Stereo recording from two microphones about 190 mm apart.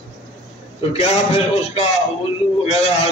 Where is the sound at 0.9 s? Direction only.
35° left (ahead or behind).